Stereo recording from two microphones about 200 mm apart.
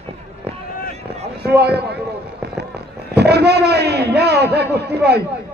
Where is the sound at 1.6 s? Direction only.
55° right (ahead or behind).